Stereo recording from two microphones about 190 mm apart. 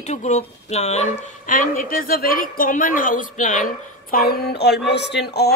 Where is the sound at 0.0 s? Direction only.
35° left (ahead or behind).